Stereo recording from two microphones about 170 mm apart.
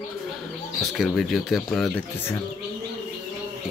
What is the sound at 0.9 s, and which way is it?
Speech, centre (ahead or behind).